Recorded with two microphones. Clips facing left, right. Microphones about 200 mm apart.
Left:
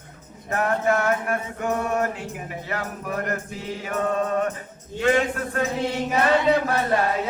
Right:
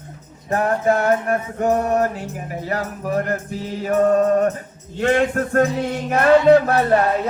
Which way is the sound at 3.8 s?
45° right (ahead or behind).